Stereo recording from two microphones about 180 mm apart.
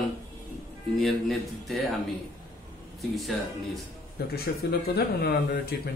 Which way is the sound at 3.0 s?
Centre (ahead or behind).